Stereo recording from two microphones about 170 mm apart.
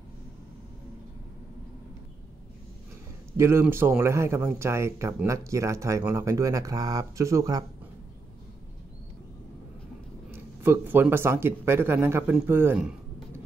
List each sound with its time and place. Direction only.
3.3 s speech: 15° right (ahead or behind)
10.3 s speech: 15° right (ahead or behind)